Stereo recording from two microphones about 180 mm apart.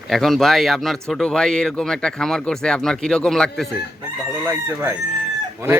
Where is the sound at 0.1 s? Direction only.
Centre (ahead or behind).